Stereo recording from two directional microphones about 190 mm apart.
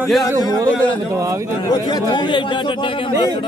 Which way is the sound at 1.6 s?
20° left (ahead or behind).